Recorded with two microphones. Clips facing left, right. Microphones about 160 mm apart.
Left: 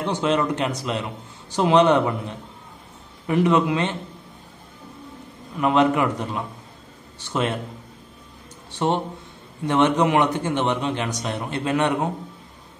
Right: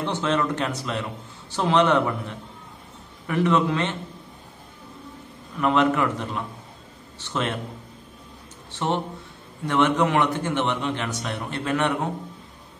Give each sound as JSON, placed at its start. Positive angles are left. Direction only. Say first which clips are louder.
{"t": 0.0, "sound": "a man's voice", "louder": "left 2 dB", "side_deg": 15}
{"t": 5.6, "sound": "a man's voice", "louder": "left 2 dB", "side_deg": 15}
{"t": 8.7, "sound": "a man's voice", "louder": "left 3 dB", "side_deg": 15}